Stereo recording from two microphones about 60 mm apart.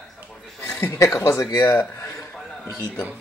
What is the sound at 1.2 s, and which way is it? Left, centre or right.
Speech, left.